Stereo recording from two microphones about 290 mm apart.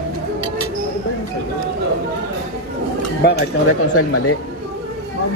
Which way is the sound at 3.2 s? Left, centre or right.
Left.